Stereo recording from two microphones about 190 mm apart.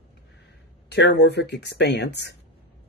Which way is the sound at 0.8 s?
65° left (ahead or behind).